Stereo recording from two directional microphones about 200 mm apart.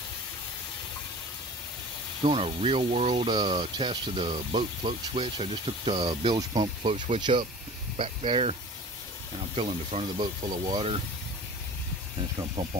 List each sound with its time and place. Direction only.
2.2 s speech: 30° right (ahead or behind)
9.6 s speech: 30° right (ahead or behind)
12.6 s speech: 15° right (ahead or behind)